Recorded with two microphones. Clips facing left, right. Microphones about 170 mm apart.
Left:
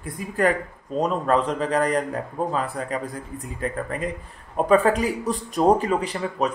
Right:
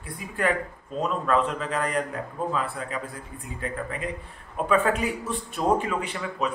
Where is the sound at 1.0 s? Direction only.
35° left (ahead or behind).